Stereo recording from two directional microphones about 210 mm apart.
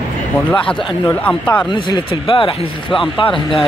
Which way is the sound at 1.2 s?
5° left (ahead or behind).